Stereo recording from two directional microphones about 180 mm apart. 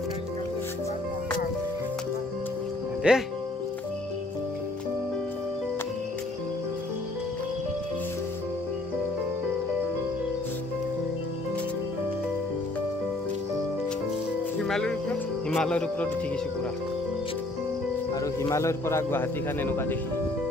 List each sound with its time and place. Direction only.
3.0 s speech: 5° right (ahead or behind)
14.6 s music: 5° left (ahead or behind)
18.2 s a man's voice: 15° left (ahead or behind)